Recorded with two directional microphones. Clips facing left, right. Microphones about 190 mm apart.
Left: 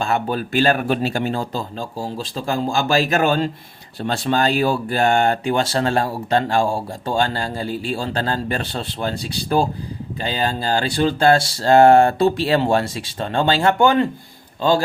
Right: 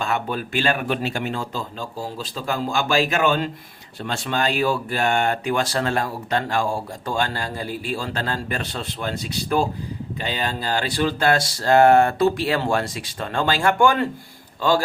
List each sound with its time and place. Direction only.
0.0 s speech: 35° left (ahead or behind)